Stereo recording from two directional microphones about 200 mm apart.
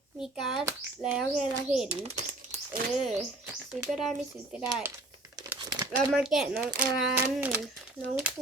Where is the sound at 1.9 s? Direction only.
30° right (ahead or behind).